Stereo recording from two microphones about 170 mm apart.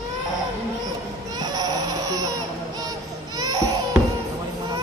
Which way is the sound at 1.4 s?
25° right (ahead or behind).